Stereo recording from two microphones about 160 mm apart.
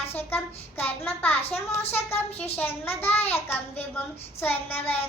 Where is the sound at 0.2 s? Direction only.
15° left (ahead or behind).